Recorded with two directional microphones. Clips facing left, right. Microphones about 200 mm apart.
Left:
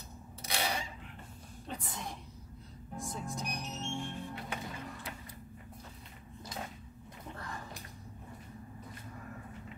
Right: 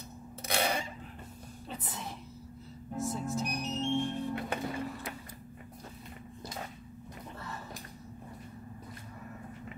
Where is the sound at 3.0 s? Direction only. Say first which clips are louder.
Right 7 dB; 5° right (ahead or behind).